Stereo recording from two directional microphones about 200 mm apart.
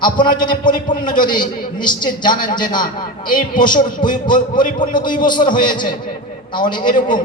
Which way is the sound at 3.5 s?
20° left (ahead or behind).